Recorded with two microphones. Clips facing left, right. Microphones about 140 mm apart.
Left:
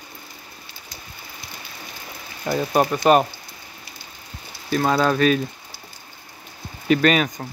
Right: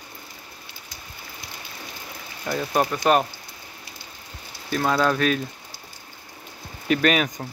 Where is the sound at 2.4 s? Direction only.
15° left (ahead or behind).